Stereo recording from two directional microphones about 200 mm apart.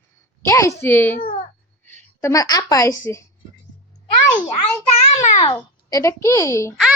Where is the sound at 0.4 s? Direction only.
15° left (ahead or behind).